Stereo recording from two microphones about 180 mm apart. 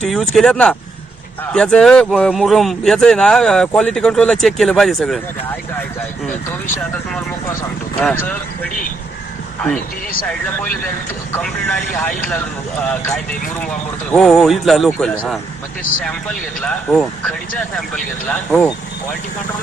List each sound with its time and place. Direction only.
0.0 s speech: centre (ahead or behind)
8.0 s speech: 10° left (ahead or behind)
11.4 s speech: 5° left (ahead or behind)